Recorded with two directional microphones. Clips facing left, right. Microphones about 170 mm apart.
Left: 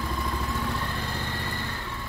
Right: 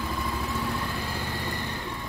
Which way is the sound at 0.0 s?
5° right (ahead or behind).